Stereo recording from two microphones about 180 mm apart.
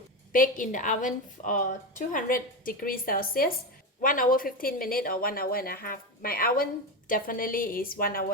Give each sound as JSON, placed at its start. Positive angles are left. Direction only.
{"t": 0.3, "sound": "a woman's voice", "side_deg": 50}